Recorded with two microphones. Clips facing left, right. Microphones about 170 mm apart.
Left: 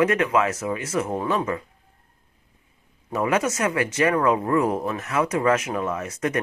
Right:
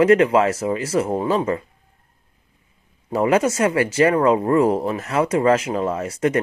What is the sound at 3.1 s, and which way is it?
Speech, 30° right (ahead or behind).